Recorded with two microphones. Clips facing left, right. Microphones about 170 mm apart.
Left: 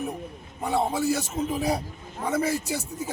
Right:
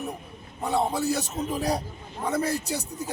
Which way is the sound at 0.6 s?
5° left (ahead or behind).